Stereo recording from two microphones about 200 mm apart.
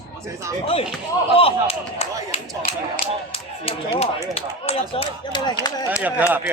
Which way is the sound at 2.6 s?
45° left (ahead or behind).